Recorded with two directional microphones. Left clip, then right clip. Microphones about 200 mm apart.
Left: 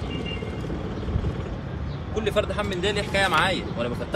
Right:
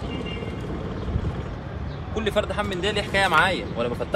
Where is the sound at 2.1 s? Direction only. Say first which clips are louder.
Even; 40° right (ahead or behind).